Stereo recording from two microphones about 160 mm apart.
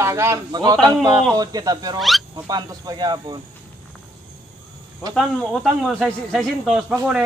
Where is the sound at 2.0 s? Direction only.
Centre (ahead or behind).